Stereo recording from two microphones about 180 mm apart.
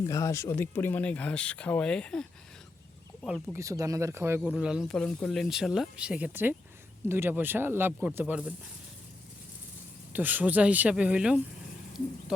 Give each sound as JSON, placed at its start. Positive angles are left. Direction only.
{"t": 0.1, "sound": "speech", "side_deg": 15}
{"t": 3.2, "sound": "speech", "side_deg": 0}
{"t": 3.5, "sound": "speech", "side_deg": -15}
{"t": 4.4, "sound": "speech", "side_deg": -5}
{"t": 10.1, "sound": "speech", "side_deg": -10}